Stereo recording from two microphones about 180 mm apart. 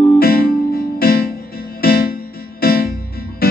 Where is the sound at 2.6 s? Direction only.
55° left (ahead or behind).